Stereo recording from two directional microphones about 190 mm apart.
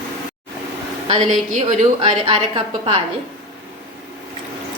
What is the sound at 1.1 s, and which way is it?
A woman's voice, 35° right (ahead or behind).